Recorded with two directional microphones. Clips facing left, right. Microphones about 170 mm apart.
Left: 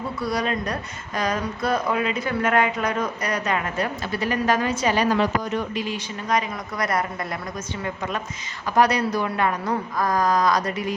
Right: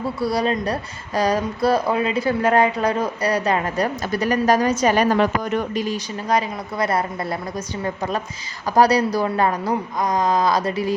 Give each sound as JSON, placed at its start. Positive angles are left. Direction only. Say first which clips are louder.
{"t": 0.2, "sound": "speech", "louder": "right 4 dB", "side_deg": -30}
{"t": 10.0, "sound": "speech", "louder": "right 1 dB", "side_deg": -20}